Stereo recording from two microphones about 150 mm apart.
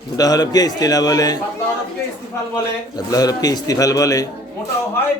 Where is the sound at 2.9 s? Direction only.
25° left (ahead or behind).